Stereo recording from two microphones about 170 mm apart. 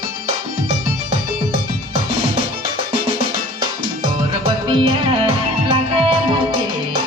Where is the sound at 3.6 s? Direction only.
30° right (ahead or behind).